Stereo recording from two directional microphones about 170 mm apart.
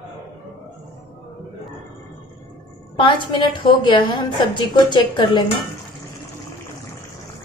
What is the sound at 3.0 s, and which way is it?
A woman's voice, 30° left (ahead or behind).